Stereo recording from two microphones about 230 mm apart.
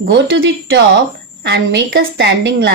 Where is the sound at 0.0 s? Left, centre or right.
Right.